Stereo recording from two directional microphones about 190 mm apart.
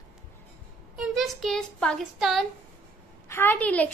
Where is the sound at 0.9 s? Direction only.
Centre (ahead or behind).